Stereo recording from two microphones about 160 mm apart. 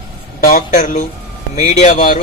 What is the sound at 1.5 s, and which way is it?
Speech, 50° left (ahead or behind).